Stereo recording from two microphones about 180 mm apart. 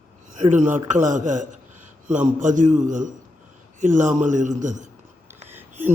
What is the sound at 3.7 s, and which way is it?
Speech, 45° right (ahead or behind).